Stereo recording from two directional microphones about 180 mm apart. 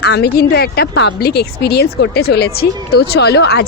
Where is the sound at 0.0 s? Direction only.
65° left (ahead or behind).